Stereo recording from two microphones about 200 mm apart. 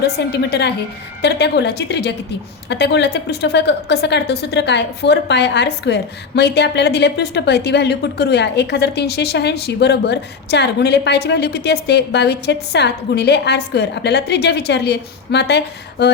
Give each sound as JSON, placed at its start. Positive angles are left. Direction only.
{"t": 0.0, "sound": "a woman's voice", "side_deg": 55}